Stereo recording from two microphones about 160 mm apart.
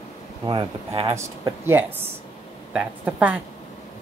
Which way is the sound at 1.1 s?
15° right (ahead or behind).